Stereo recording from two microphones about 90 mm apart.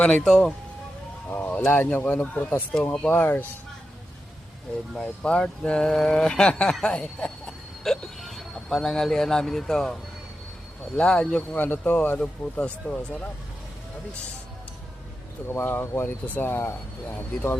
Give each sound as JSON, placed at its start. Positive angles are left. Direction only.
{"t": 0.0, "sound": "speech", "side_deg": 10}
{"t": 1.3, "sound": "speech", "side_deg": 20}
{"t": 4.9, "sound": "speech", "side_deg": 10}
{"t": 15.4, "sound": "speech", "side_deg": 25}